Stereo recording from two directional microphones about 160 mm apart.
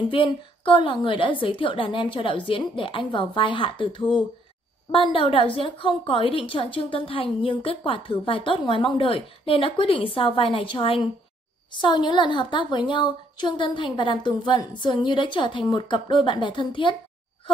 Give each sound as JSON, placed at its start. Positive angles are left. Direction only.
{"t": 0.1, "sound": "a woman's voice", "side_deg": 30}